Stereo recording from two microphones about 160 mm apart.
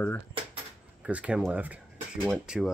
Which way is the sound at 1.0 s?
5° right (ahead or behind).